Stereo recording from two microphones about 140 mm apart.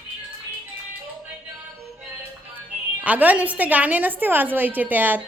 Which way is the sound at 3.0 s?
10° right (ahead or behind).